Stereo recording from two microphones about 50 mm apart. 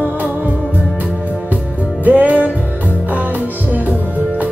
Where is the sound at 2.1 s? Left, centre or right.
Right.